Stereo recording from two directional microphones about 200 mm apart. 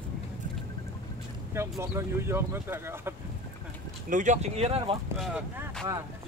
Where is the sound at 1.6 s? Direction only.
15° right (ahead or behind).